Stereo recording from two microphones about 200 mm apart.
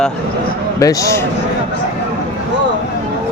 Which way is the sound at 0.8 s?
15° left (ahead or behind).